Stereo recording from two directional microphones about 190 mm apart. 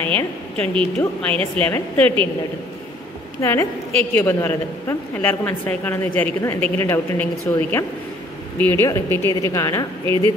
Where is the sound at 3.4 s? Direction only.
15° left (ahead or behind).